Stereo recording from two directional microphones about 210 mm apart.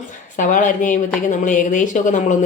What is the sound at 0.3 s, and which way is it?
A woman's voice, 35° left (ahead or behind).